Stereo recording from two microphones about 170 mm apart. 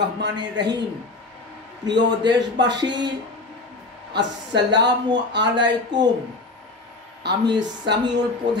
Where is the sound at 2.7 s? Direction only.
25° right (ahead or behind).